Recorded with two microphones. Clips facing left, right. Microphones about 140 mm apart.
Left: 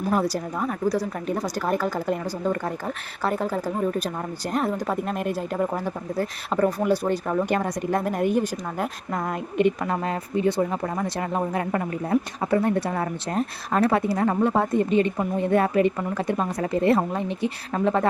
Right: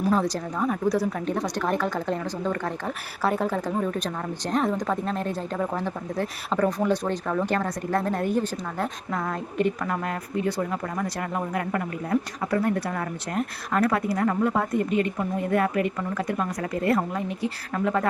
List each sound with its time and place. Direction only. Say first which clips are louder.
0.1 s speech: even; 10° left (ahead or behind); by 18.1 s 25° left (ahead or behind)